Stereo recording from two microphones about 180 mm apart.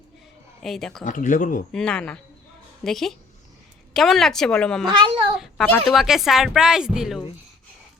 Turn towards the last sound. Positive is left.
turn(degrees=-5)  # may be behind; listen again after turning